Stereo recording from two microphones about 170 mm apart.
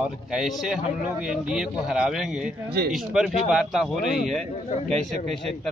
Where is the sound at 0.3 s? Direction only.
Centre (ahead or behind).